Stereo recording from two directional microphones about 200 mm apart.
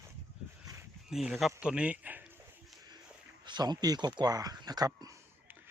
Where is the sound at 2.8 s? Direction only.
20° right (ahead or behind).